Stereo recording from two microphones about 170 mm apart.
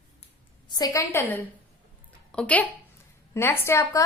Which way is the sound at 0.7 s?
20° left (ahead or behind).